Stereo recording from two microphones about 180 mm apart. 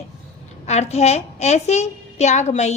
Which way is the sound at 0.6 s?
35° left (ahead or behind).